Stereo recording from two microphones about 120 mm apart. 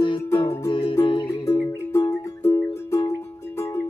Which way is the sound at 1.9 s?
20° left (ahead or behind).